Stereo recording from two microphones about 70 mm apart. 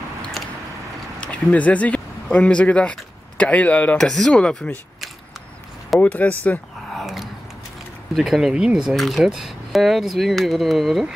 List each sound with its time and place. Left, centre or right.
1.2 s speech: left
4.0 s speech: centre
5.9 s speech: left
6.9 s a sound: centre
8.1 s speech: centre
8.9 s speech: centre